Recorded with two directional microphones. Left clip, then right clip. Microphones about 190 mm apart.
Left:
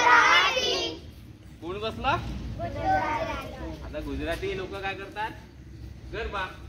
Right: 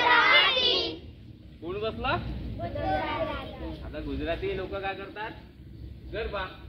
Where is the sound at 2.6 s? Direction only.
55° right (ahead or behind).